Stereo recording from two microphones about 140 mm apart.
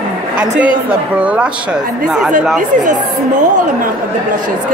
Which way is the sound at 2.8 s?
65° right (ahead or behind).